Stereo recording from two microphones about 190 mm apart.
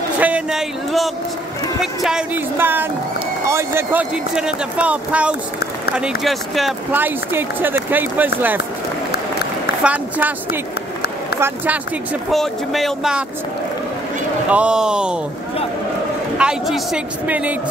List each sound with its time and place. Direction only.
0.2 s speech: 5° right (ahead or behind)
9.8 s speech: 10° right (ahead or behind)
14.5 s speech: 5° right (ahead or behind)
16.3 s speech: 5° right (ahead or behind)